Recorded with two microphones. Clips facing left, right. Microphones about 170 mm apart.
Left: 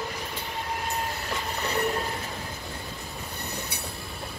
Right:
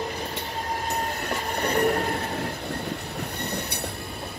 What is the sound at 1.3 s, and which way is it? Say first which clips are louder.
Train: right 5 dB; 40° right (ahead or behind).